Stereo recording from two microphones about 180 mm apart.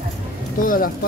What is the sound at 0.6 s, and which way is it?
Speech, 50° left (ahead or behind).